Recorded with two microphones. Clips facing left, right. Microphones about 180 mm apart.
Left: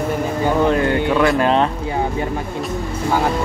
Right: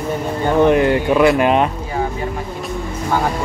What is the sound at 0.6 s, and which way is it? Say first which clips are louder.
Speech: right 6 dB; 20° right (ahead or behind).